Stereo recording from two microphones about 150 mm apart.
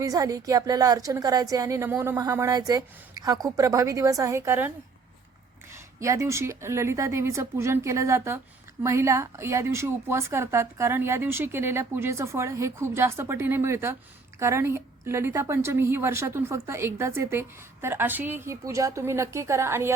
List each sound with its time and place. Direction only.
0.0 s a woman's voice: 25° right (ahead or behind)
6.0 s a woman's voice: 20° right (ahead or behind)